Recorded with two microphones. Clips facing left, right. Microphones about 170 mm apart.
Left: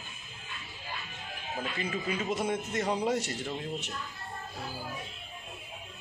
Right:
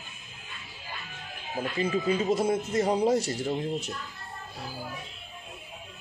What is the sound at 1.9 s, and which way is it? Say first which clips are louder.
Speech: right 7 dB; 30° right (ahead or behind).